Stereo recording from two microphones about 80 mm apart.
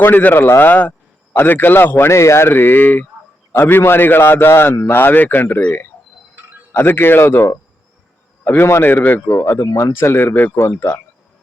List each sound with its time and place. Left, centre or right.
0.0 s a man's voice: left